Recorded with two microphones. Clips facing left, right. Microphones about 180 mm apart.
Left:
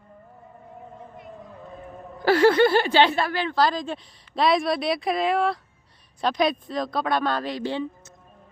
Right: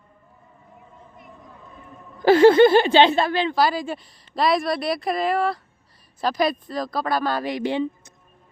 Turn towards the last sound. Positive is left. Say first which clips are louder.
# right 3 dB
turn(degrees=-15)  # may be behind; listen again after turning